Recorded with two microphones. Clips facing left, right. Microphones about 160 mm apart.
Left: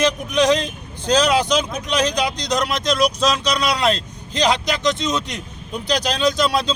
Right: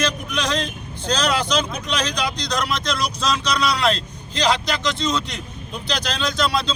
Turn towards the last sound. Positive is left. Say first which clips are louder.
# left 4 dB
turn(degrees=15)  # may be behind; listen again after turning